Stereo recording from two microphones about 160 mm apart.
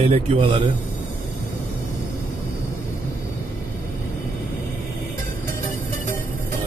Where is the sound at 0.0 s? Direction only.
35° right (ahead or behind).